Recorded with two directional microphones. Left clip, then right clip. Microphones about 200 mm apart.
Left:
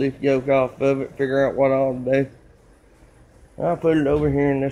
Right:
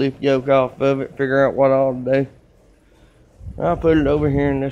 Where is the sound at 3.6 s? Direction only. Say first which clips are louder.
Right 3 dB; 20° right (ahead or behind).